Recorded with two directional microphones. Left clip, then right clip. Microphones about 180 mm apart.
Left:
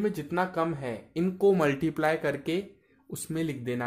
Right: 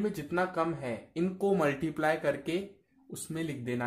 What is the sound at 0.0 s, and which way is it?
Speech, 35° left (ahead or behind).